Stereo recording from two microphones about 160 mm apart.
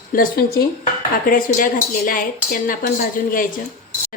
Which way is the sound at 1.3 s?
60° left (ahead or behind).